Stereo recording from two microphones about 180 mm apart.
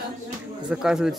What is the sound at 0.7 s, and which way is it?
Speech, 5° right (ahead or behind).